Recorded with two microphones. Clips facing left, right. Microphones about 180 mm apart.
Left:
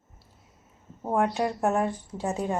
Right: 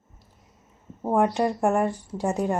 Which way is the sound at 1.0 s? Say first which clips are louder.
Right 3 dB; 15° right (ahead or behind).